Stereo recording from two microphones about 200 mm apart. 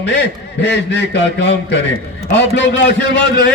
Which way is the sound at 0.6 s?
60° left (ahead or behind).